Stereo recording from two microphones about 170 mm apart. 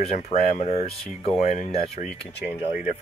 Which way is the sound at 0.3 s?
45° left (ahead or behind).